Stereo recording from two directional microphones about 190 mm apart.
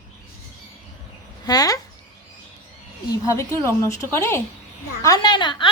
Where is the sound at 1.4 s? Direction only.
20° left (ahead or behind).